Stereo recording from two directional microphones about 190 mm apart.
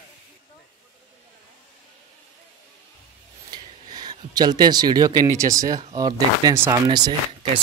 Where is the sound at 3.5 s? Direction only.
20° right (ahead or behind).